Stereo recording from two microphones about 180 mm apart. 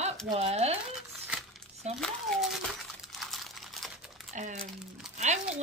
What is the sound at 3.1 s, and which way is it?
Crumpling, centre (ahead or behind).